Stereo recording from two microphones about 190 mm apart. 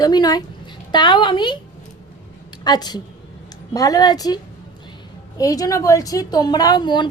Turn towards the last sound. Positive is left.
turn(degrees=25)  # may be behind; listen again after turning